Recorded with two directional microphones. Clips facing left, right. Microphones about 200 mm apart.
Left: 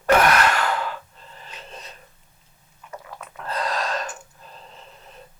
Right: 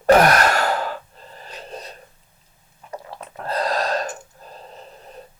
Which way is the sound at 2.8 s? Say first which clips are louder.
Right 4 dB; 35° right (ahead or behind).